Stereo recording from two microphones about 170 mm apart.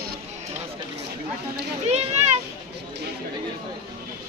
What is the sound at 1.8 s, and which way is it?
Speech, 40° right (ahead or behind).